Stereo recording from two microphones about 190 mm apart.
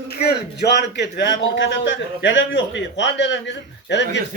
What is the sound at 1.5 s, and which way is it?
A man's voice, 75° left (ahead or behind).